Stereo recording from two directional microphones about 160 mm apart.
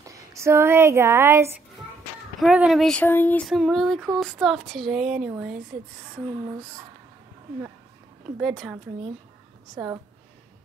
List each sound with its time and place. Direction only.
0.0 s speech: 20° right (ahead or behind)
2.4 s speech: 5° right (ahead or behind); by 3.4 s 10° left (ahead or behind)
3.4 s speech: centre (ahead or behind)
8.4 s speech: centre (ahead or behind)